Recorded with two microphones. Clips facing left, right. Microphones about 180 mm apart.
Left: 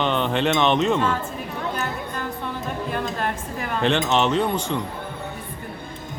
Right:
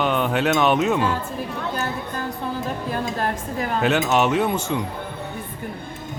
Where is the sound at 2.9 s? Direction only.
40° right (ahead or behind).